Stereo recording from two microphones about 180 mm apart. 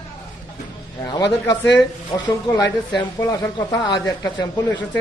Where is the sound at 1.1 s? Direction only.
20° left (ahead or behind).